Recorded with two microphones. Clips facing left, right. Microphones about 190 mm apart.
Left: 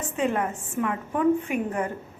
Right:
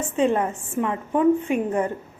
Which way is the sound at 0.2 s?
25° right (ahead or behind).